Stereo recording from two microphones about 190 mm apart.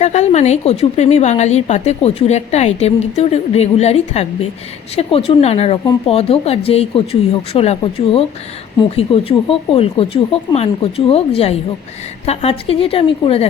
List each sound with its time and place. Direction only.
0.0 s a woman's voice: 35° left (ahead or behind)
12.2 s a woman's voice: 35° left (ahead or behind)